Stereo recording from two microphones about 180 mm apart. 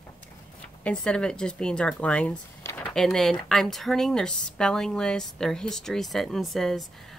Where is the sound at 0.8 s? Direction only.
5° left (ahead or behind).